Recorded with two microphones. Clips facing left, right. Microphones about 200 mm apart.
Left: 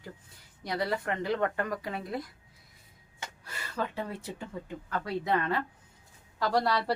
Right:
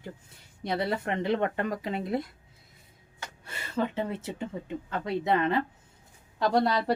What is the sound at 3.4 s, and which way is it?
Speech, 25° right (ahead or behind).